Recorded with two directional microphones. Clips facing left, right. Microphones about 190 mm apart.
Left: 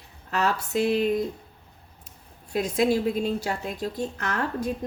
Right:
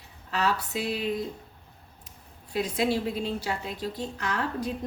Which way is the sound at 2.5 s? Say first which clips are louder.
Left 4 dB; 45° left (ahead or behind).